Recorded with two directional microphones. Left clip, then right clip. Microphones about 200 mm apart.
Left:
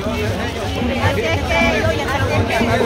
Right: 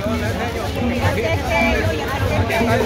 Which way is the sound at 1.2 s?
5° left (ahead or behind).